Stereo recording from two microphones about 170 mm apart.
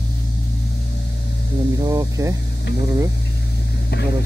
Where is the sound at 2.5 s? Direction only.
75° left (ahead or behind).